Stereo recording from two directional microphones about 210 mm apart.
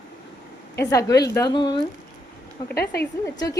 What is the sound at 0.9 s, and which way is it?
A woman's voice, 15° left (ahead or behind).